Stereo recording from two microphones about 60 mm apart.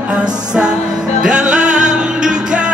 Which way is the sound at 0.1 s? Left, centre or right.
Centre.